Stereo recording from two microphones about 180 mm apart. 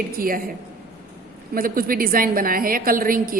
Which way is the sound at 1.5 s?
55° right (ahead or behind).